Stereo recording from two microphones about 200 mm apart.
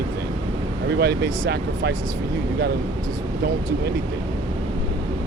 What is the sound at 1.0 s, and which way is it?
Speech, 55° right (ahead or behind).